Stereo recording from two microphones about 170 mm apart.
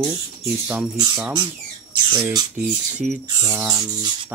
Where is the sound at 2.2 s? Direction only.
25° right (ahead or behind).